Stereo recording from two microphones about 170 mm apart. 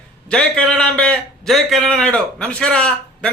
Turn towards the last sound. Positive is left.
turn(degrees=5)  # may be behind; listen again after turning